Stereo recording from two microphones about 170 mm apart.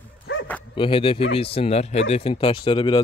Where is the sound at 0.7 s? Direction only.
30° left (ahead or behind).